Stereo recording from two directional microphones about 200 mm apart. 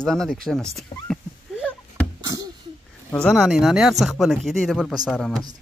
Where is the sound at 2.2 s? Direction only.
15° right (ahead or behind).